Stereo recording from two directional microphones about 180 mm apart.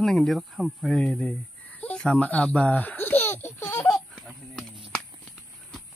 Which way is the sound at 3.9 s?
Centre (ahead or behind).